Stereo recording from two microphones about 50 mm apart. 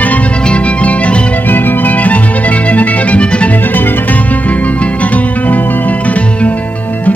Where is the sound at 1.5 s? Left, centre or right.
Left.